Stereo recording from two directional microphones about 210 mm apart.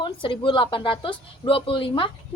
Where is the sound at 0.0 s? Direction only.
25° left (ahead or behind).